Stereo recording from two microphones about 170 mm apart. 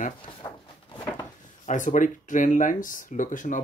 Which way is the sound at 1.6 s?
50° left (ahead or behind).